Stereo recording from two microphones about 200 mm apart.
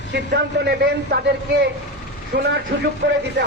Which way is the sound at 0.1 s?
60° right (ahead or behind).